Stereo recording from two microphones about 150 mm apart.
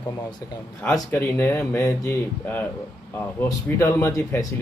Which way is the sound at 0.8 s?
15° left (ahead or behind).